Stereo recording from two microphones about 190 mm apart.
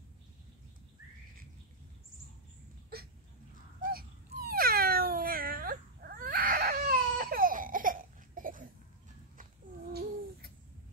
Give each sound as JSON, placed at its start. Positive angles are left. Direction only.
{"t": 3.8, "sound": "cat", "side_deg": -50}